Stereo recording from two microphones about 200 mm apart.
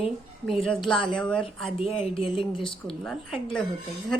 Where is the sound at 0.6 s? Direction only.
5° left (ahead or behind).